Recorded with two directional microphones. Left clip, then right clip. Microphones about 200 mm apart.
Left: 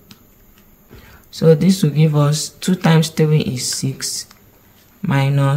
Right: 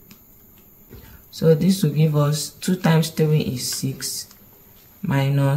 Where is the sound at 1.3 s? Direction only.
25° left (ahead or behind).